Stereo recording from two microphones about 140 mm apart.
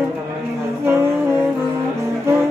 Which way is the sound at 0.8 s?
15° right (ahead or behind).